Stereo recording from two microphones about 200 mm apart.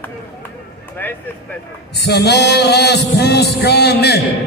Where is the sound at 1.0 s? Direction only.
10° left (ahead or behind).